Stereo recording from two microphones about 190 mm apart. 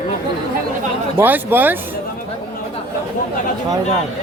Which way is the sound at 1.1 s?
10° right (ahead or behind).